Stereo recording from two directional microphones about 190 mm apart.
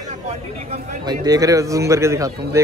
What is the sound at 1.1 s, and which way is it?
A man's voice, 20° right (ahead or behind).